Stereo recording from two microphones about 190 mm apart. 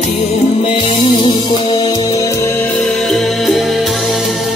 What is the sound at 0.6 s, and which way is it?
Music, 30° left (ahead or behind).